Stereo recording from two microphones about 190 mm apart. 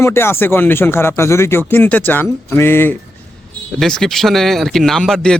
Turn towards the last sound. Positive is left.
turn(degrees=5)  # may be behind; listen again after turning